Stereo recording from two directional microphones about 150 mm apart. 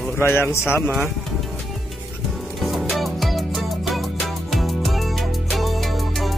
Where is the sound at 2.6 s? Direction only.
Centre (ahead or behind).